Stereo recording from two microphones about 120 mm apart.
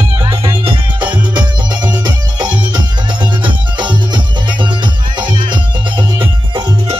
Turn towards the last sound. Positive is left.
turn(degrees=-40)  # may be behind; listen again after turning